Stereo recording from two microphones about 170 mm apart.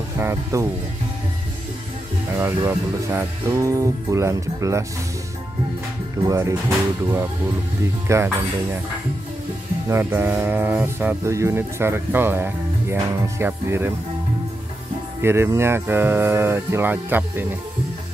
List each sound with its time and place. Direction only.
0.2 s speech: 15° right (ahead or behind)
2.3 s speech: 15° right (ahead or behind)
6.2 s speech: 15° right (ahead or behind)
8.1 s speech: 15° right (ahead or behind)
9.8 s speech: 15° right (ahead or behind)
15.2 s speech: 15° right (ahead or behind)